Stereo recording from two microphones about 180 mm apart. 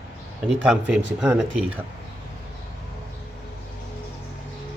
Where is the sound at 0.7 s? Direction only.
5° right (ahead or behind).